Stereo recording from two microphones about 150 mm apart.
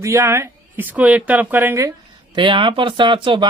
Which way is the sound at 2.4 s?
35° right (ahead or behind).